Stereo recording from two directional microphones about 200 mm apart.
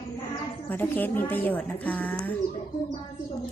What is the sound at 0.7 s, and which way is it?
Speech, 10° left (ahead or behind).